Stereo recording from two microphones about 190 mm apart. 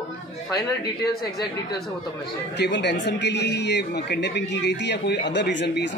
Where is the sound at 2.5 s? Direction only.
65° left (ahead or behind).